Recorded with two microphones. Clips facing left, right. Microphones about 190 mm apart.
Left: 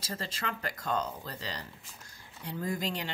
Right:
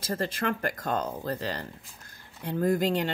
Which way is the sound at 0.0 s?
55° right (ahead or behind).